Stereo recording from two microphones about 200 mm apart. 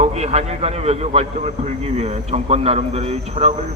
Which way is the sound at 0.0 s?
30° right (ahead or behind).